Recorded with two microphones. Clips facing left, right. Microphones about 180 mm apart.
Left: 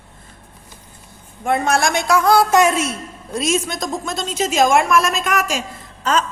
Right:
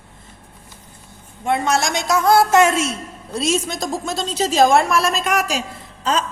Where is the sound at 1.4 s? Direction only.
50° left (ahead or behind).